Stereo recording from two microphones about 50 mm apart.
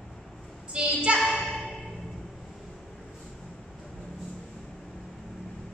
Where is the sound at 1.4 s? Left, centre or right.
Centre.